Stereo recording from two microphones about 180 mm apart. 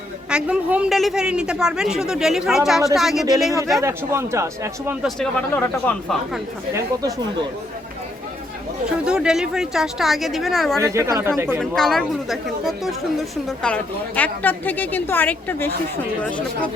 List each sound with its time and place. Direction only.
0.3 s a woman's voice: 5° right (ahead or behind)
3.8 s a man's voice: 15° right (ahead or behind)
5.0 s a woman's voice: 5° left (ahead or behind)
9.0 s a woman's voice: 5° right (ahead or behind)
10.8 s a man's voice: 15° right (ahead or behind)
11.6 s a woman's voice: centre (ahead or behind)